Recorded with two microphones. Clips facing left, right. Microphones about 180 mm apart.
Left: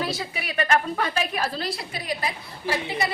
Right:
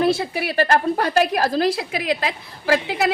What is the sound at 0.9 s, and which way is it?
A woman's voice, 70° right (ahead or behind).